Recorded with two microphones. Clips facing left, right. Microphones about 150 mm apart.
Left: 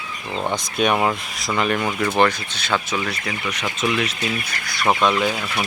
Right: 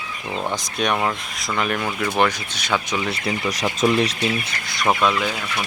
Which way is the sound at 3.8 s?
35° right (ahead or behind).